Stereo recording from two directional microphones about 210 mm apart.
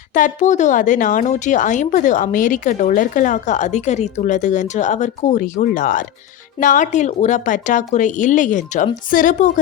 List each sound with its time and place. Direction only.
0.1 s speech: 35° left (ahead or behind)